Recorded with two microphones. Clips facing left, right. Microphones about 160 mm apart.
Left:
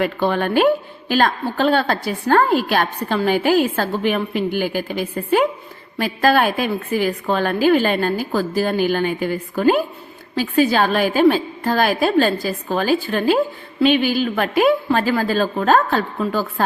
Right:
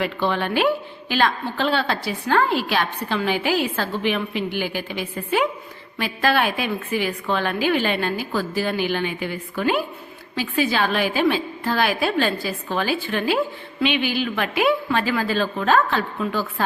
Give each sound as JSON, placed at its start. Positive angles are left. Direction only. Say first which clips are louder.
{"t": 0.0, "sound": "a woman's voice", "louder": "left 4 dB", "side_deg": 45}